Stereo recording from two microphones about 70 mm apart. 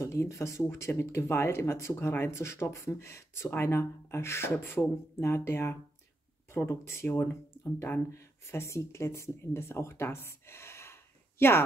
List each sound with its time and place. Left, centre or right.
0.0 s speech: left